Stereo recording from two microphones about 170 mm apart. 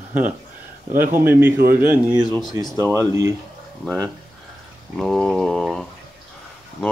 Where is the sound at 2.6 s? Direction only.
20° right (ahead or behind).